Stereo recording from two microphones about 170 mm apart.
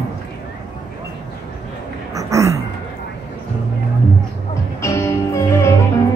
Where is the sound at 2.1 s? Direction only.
20° right (ahead or behind).